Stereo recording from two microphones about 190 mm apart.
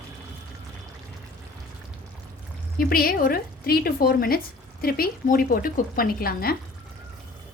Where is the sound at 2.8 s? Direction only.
50° left (ahead or behind).